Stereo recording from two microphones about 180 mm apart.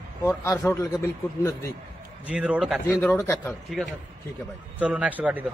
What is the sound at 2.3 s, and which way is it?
Speech, 5° right (ahead or behind).